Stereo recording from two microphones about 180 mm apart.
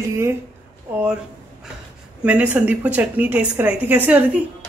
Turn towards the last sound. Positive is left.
turn(degrees=-10)  # may be behind; listen again after turning